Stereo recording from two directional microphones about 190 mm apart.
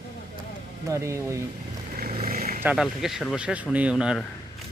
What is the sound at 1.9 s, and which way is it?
Vehicle, 50° right (ahead or behind).